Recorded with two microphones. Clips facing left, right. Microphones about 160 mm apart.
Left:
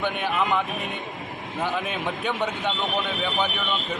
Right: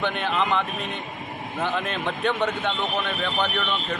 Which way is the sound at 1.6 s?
10° left (ahead or behind).